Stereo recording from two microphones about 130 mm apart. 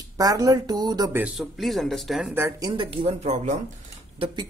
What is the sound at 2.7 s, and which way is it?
Speech, 40° right (ahead or behind).